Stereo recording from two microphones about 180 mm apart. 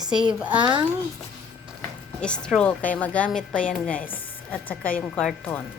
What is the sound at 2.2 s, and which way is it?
A woman's voice, 5° left (ahead or behind).